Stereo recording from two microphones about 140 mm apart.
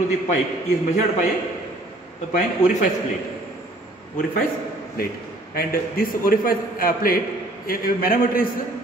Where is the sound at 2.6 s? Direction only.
55° left (ahead or behind).